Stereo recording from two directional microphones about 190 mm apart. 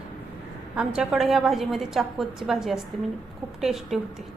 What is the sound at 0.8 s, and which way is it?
A woman's voice, 5° right (ahead or behind).